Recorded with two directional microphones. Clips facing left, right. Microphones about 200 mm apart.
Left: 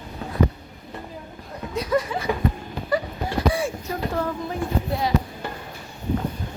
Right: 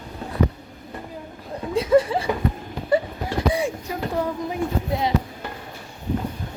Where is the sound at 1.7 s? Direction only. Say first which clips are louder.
Right 6 dB; 30° right (ahead or behind).